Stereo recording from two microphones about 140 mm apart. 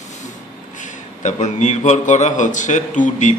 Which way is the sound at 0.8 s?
60° left (ahead or behind).